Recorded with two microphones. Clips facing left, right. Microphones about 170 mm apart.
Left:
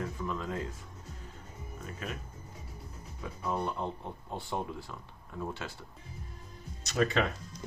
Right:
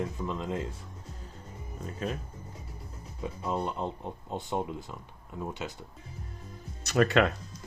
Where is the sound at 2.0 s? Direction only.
35° right (ahead or behind).